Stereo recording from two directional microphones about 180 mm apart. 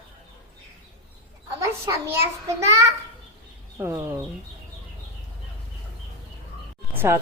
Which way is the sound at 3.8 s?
15° right (ahead or behind).